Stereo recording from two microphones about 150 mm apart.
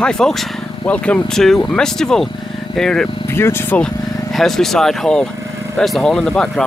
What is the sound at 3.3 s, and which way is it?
Speech, 15° left (ahead or behind).